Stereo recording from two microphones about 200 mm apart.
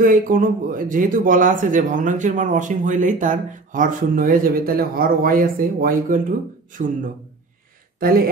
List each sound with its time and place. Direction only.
0.0 s speech: 45° right (ahead or behind)